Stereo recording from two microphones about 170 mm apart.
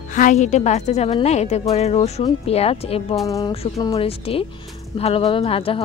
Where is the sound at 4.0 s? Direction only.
35° left (ahead or behind).